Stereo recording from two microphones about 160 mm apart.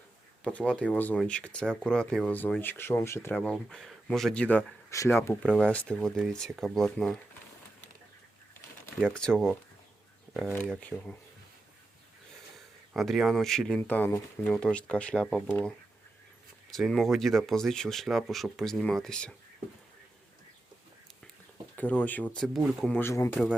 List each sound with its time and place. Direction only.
0.4 s speech: 5° left (ahead or behind)
3.3 s speech: 5° left (ahead or behind)
5.4 s speech: centre (ahead or behind)
9.1 s speech: 5° left (ahead or behind)
10.8 s speech: 10° left (ahead or behind)
12.5 s speech: centre (ahead or behind)
16.7 s speech: centre (ahead or behind)
21.8 s speech: 10° left (ahead or behind)
23.0 s speech: 15° left (ahead or behind)